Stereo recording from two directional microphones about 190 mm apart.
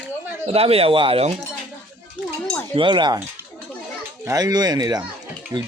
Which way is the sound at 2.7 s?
25° right (ahead or behind).